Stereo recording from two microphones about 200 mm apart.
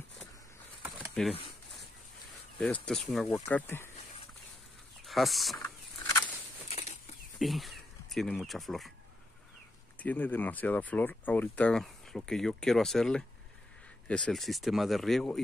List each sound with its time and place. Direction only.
0.8 s a sound: 5° right (ahead or behind)
2.6 s speech: 5° left (ahead or behind)
3.4 s speech: 10° left (ahead or behind)
5.0 s speech: centre (ahead or behind)
6.7 s bird flight: 35° left (ahead or behind)
7.3 s speech: centre (ahead or behind)
9.9 s speech: 10° left (ahead or behind)